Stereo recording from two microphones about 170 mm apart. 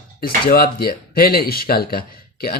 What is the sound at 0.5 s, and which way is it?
Speech, 65° left (ahead or behind).